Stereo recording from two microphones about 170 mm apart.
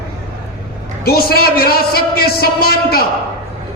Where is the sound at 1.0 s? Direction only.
65° left (ahead or behind).